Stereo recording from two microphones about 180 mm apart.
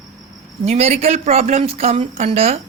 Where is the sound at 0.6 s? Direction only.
35° right (ahead or behind).